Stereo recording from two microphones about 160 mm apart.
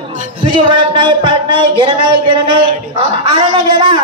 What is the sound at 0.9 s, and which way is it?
A man's voice, 30° right (ahead or behind).